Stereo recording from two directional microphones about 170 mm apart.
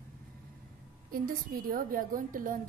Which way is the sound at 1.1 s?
55° right (ahead or behind).